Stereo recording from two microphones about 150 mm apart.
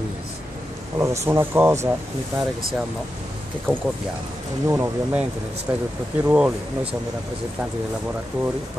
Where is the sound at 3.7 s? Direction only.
5° left (ahead or behind).